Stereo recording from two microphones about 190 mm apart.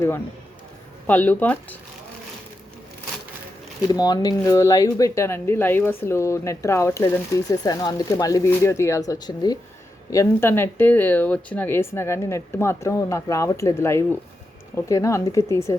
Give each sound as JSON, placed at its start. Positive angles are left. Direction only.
{"t": 1.0, "sound": "speech", "side_deg": 10}
{"t": 3.9, "sound": "speech", "side_deg": 20}